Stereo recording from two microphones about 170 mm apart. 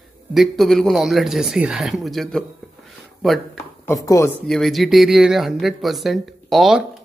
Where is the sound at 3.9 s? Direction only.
20° left (ahead or behind).